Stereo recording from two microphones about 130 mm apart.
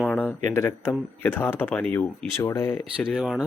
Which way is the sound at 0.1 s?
10° left (ahead or behind).